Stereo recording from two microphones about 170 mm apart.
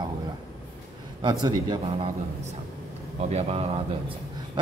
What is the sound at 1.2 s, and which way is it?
Speech, 25° right (ahead or behind).